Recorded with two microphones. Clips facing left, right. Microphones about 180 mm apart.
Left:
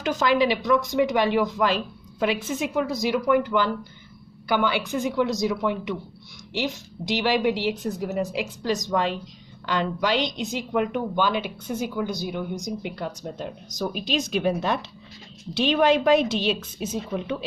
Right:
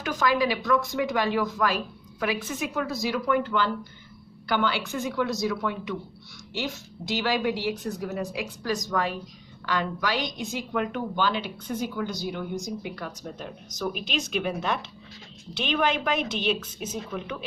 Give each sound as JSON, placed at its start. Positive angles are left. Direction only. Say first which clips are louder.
{"t": 0.0, "sound": "a woman's voice", "louder": "left 3 dB", "side_deg": 25}